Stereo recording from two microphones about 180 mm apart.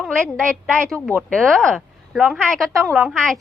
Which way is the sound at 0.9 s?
5° left (ahead or behind).